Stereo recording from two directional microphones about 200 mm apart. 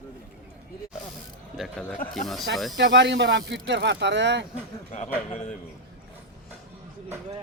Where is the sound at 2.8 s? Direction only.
60° right (ahead or behind).